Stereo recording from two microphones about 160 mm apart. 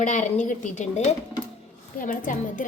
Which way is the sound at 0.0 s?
50° left (ahead or behind).